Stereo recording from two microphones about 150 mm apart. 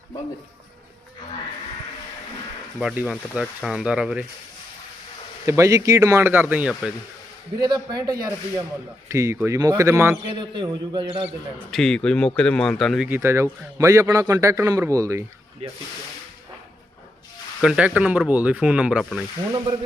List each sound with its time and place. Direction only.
2.7 s speech: 5° right (ahead or behind)
5.5 s speech: 20° right (ahead or behind)
7.6 s a man's voice: 30° right (ahead or behind)
10.2 s a man's voice: 30° right (ahead or behind)
11.7 s speech: 5° left (ahead or behind)
13.1 s a man's voice: 15° right (ahead or behind)
15.6 s speech: 40° right (ahead or behind)
17.6 s speech: 5° right (ahead or behind)